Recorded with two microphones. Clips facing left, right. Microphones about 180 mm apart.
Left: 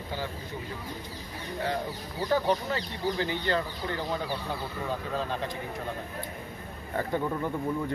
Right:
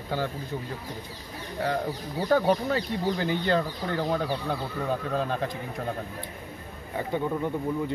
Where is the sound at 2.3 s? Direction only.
50° right (ahead or behind).